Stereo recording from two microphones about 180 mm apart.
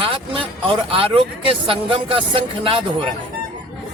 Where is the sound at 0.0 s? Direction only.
30° right (ahead or behind).